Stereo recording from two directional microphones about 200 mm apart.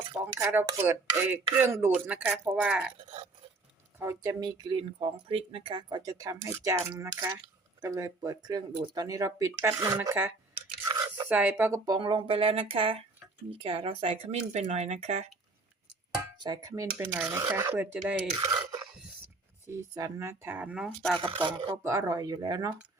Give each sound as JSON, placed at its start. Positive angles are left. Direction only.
{"t": 0.3, "sound": "speech", "side_deg": -15}
{"t": 3.9, "sound": "speech", "side_deg": -15}
{"t": 16.4, "sound": "speech", "side_deg": -20}
{"t": 19.6, "sound": "speech", "side_deg": -15}
{"t": 21.2, "sound": "speech", "side_deg": -25}